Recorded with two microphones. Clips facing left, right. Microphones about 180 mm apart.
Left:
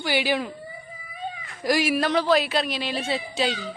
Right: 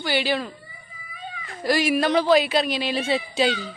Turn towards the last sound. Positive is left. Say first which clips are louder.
# right 4 dB
turn(degrees=0)  # may be behind; listen again after turning